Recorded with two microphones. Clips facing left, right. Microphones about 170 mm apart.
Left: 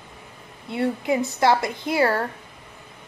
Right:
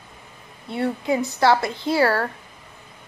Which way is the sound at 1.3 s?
20° left (ahead or behind).